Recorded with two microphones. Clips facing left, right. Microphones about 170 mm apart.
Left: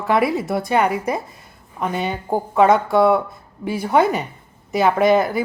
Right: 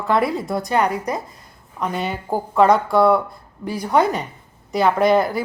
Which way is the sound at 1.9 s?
Centre (ahead or behind).